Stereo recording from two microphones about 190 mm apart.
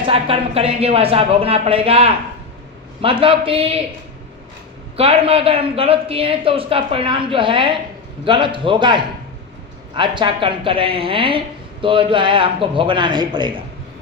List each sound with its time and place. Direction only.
0.0 s a woman's voice: 30° right (ahead or behind)
4.9 s a woman's voice: 30° right (ahead or behind)